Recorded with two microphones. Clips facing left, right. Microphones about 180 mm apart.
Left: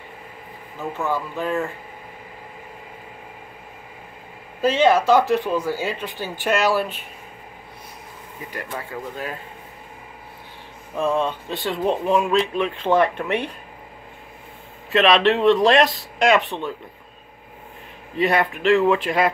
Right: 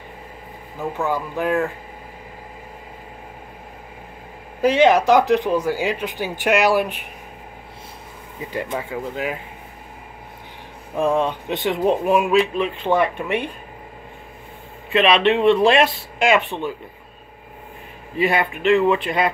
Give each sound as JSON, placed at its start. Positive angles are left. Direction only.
{"t": 0.9, "sound": "speech", "side_deg": -15}
{"t": 4.6, "sound": "speech", "side_deg": -15}
{"t": 8.5, "sound": "speech", "side_deg": -20}
{"t": 11.0, "sound": "speech", "side_deg": -15}
{"t": 14.9, "sound": "speech", "side_deg": 0}
{"t": 18.1, "sound": "speech", "side_deg": 0}